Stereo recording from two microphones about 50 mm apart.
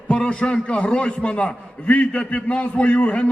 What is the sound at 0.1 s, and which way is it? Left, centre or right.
A man's voice, left.